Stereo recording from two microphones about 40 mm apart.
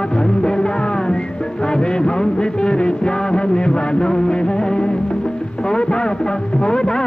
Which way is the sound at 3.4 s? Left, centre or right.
Left.